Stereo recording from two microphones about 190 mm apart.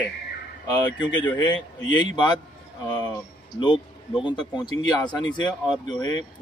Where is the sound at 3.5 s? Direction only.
25° left (ahead or behind).